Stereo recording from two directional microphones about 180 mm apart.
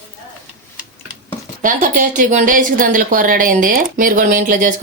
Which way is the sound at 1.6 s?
45° right (ahead or behind).